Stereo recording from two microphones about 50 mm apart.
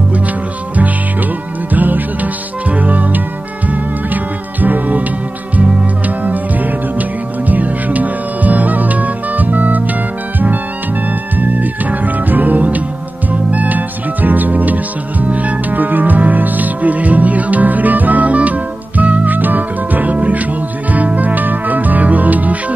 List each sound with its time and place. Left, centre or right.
1.7 s music: right
11.1 s music: right